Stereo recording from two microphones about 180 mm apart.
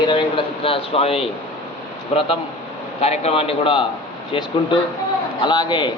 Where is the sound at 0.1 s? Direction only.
30° left (ahead or behind).